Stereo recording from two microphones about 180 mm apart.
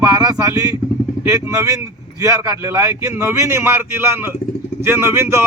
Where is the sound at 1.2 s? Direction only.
15° right (ahead or behind).